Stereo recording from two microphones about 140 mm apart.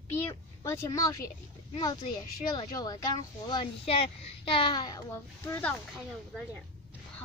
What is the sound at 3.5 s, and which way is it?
Speech, 40° left (ahead or behind).